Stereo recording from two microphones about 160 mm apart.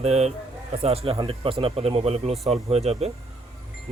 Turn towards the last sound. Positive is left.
turn(degrees=-40)  # may be behind; listen again after turning